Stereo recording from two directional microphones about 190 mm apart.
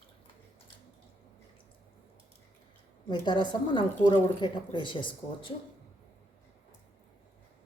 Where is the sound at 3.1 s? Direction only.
25° left (ahead or behind).